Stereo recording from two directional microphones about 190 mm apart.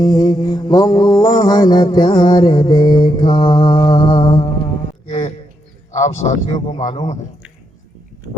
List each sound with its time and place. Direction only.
0.0 s mantra: 20° left (ahead or behind)
5.0 s music: 35° left (ahead or behind)
5.9 s a man's voice: 40° left (ahead or behind)